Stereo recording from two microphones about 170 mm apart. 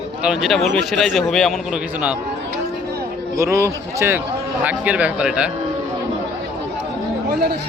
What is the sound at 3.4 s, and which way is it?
Speech, 15° right (ahead or behind).